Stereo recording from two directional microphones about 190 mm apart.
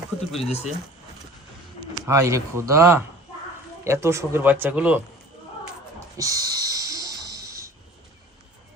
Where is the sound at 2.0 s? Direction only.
15° right (ahead or behind).